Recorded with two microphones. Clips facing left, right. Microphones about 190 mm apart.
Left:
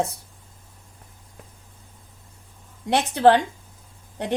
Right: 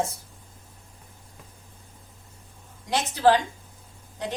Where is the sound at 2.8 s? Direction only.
60° left (ahead or behind).